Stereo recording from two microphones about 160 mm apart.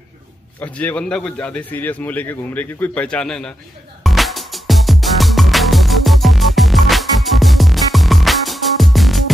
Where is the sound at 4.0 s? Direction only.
Centre (ahead or behind).